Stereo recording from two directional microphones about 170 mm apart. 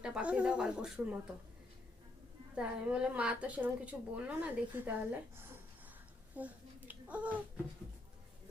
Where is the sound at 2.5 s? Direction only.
5° right (ahead or behind).